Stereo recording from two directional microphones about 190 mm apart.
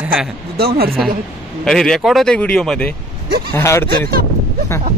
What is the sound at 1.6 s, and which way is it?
Speech, centre (ahead or behind).